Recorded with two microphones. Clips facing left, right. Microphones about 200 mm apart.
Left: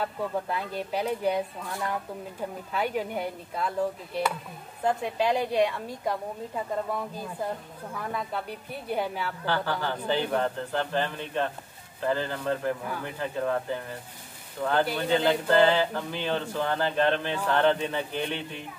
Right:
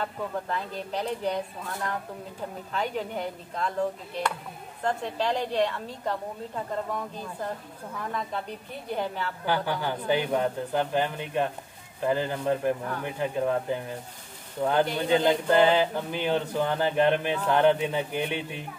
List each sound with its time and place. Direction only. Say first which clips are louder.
0.0 s a woman's voice: left 2 dB; 10° left (ahead or behind)
2.7 s a woman's voice: left 1 dB; 10° left (ahead or behind)
4.8 s a woman's voice: left 2 dB; 10° left (ahead or behind)
9.5 s speech: right 1 dB; 15° right (ahead or behind)